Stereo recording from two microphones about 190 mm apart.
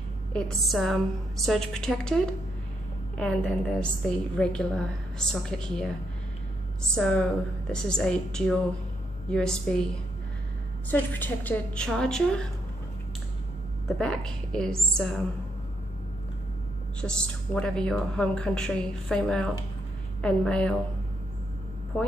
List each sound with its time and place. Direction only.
0.3 s a woman's voice: 5° left (ahead or behind)
7.0 s a woman's voice: 5° left (ahead or behind)
10.9 s a woman's voice: 10° left (ahead or behind)
13.8 s a woman's voice: 5° left (ahead or behind)
17.0 s a woman's voice: 5° left (ahead or behind)